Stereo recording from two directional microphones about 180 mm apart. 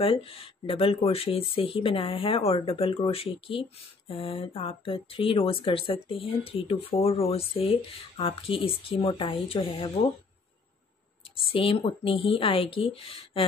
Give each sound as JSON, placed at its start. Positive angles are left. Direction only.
{"t": 0.0, "sound": "speech", "side_deg": 30}
{"t": 11.5, "sound": "speech", "side_deg": 30}